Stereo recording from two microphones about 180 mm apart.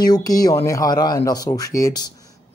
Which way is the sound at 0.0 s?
20° left (ahead or behind).